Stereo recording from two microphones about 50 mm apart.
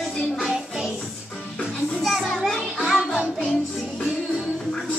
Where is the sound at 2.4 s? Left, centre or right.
Centre.